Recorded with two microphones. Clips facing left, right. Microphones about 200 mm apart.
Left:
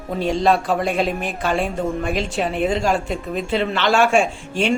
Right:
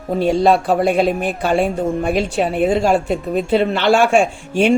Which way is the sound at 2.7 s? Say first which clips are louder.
Right 5 dB; 50° right (ahead or behind).